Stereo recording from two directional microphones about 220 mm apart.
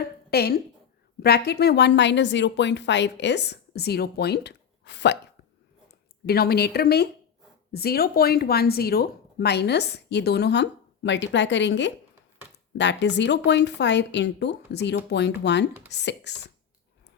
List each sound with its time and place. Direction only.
0.0 s a sound: 45° left (ahead or behind)
1.2 s speech: 45° left (ahead or behind)
6.2 s speech: 45° left (ahead or behind)